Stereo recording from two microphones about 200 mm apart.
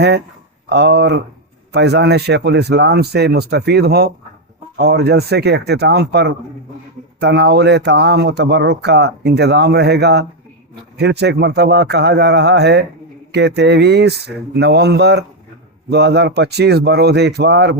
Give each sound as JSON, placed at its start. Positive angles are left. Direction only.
{"t": 0.7, "sound": "speech", "side_deg": -55}